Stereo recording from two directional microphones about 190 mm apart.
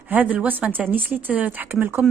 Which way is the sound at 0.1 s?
10° right (ahead or behind).